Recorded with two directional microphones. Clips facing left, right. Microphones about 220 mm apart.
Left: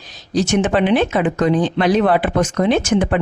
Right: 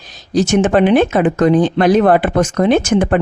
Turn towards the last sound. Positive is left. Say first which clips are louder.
# right 3 dB
turn(degrees=-50)  # may be behind; listen again after turning